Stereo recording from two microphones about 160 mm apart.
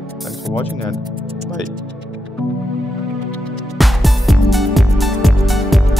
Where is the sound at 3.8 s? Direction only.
Centre (ahead or behind).